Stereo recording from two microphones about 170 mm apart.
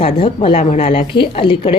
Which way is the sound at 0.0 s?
30° left (ahead or behind).